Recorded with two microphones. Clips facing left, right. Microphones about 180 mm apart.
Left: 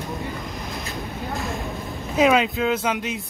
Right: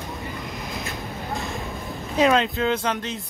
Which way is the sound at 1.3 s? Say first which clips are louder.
Left 1 dB; centre (ahead or behind).